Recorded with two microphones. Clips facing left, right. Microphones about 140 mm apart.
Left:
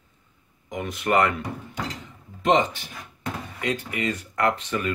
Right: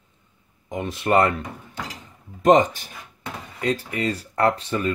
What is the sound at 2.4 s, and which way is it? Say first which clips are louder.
Speech: right 5 dB; 45° right (ahead or behind).